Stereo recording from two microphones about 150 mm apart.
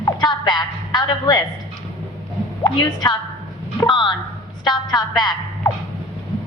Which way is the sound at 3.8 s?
30° left (ahead or behind).